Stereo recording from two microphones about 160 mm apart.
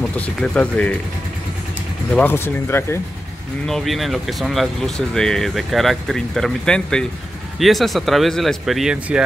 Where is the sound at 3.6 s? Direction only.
Centre (ahead or behind).